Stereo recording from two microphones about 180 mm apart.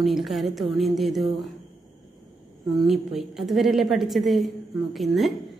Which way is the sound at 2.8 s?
Centre (ahead or behind).